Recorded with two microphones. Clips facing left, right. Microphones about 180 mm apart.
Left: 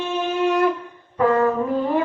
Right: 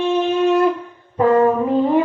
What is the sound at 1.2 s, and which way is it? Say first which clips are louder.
Brass instrument: right 4 dB; 30° right (ahead or behind).